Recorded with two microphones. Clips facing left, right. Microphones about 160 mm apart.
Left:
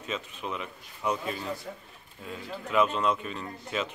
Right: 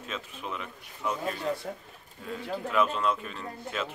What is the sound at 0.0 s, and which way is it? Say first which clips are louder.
Speech: left 3 dB; centre (ahead or behind).